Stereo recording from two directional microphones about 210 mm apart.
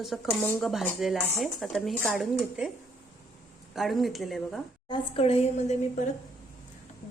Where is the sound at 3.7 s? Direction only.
Centre (ahead or behind).